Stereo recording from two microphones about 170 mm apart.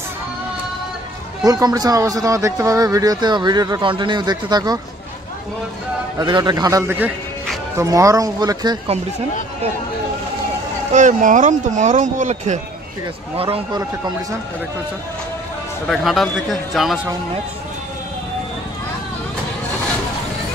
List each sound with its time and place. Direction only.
1.4 s a man's voice: 20° right (ahead or behind)
6.1 s a man's voice: 25° right (ahead or behind)
10.9 s speech: 45° right (ahead or behind)
13.4 s a man's voice: 30° right (ahead or behind)
15.9 s a man's voice: centre (ahead or behind)